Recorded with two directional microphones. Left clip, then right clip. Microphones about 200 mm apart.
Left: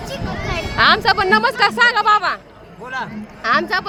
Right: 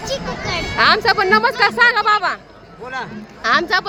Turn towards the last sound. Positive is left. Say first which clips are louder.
# right 1 dB
turn(degrees=-5)  # may be behind; listen again after turning